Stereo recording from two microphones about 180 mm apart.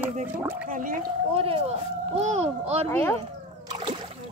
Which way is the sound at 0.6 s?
45° right (ahead or behind).